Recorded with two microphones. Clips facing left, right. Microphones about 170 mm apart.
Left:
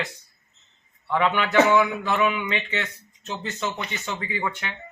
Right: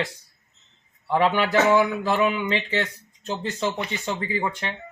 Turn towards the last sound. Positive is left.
turn(degrees=-30)  # may be behind; listen again after turning